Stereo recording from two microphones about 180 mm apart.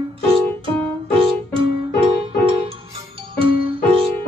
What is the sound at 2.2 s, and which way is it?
Music, 30° right (ahead or behind).